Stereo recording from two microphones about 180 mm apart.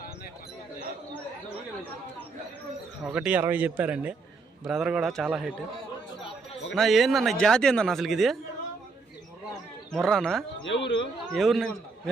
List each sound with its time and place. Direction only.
1.1 s chatter: 10° left (ahead or behind)
3.0 s speech: 5° right (ahead or behind)
6.7 s speech: centre (ahead or behind)
9.9 s speech: centre (ahead or behind)
10.6 s speech: 90° left
11.3 s speech: centre (ahead or behind)